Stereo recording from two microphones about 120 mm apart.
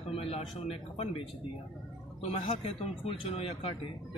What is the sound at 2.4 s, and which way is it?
A man's voice, 50° left (ahead or behind).